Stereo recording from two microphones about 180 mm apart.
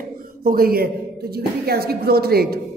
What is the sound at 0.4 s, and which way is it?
A woman's voice, 55° right (ahead or behind).